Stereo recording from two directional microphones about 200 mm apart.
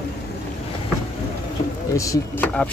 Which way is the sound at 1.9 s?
15° left (ahead or behind).